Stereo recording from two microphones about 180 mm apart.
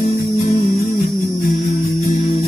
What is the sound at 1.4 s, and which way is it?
Music, 50° left (ahead or behind).